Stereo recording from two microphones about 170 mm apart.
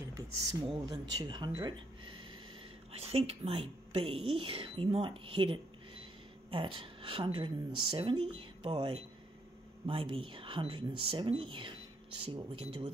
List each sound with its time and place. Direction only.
0.1 s speech: 20° right (ahead or behind)
1.5 s a sound: 25° right (ahead or behind)
2.9 s a woman's voice: 35° right (ahead or behind)